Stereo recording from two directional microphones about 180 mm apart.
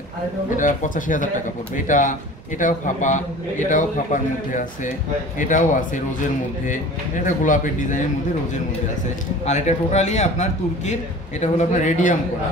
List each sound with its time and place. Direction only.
0.6 s a man's voice: 45° left (ahead or behind)
9.5 s a man's voice: 40° left (ahead or behind)